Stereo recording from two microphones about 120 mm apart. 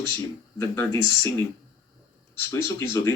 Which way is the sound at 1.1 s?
25° left (ahead or behind).